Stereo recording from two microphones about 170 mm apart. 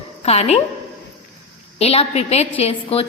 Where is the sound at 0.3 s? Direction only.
40° left (ahead or behind).